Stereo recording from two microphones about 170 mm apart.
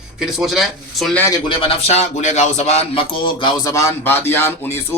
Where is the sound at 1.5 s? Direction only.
35° left (ahead or behind).